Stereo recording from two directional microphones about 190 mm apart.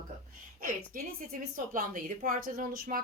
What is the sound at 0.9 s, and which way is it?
A woman's voice, 45° right (ahead or behind).